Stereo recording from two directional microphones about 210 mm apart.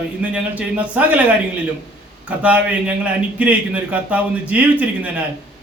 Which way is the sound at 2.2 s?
5° right (ahead or behind).